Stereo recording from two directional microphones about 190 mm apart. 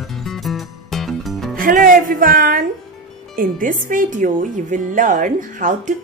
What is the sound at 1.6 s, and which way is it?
Music, 45° right (ahead or behind).